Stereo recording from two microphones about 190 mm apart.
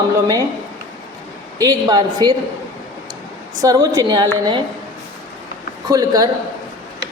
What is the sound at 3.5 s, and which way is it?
A woman's voice, 20° right (ahead or behind).